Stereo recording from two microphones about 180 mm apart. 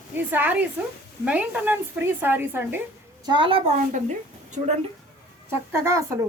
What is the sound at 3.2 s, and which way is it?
Speech, 25° right (ahead or behind).